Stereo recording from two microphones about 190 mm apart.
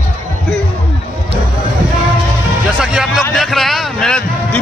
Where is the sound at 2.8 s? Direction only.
5° right (ahead or behind).